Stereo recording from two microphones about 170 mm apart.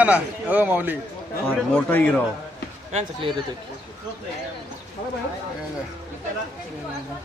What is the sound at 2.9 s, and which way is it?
Speech, 40° right (ahead or behind).